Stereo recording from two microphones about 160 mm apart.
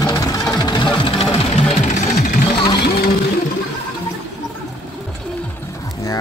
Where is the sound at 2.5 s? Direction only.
25° left (ahead or behind).